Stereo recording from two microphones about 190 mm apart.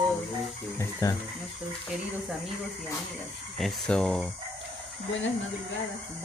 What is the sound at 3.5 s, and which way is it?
Speech, centre (ahead or behind).